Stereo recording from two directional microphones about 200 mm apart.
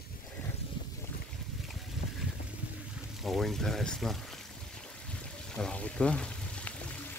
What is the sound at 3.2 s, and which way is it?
Speech, centre (ahead or behind).